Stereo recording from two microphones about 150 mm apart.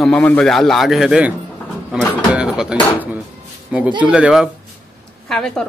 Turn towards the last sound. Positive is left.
turn(degrees=5)  # may be behind; listen again after turning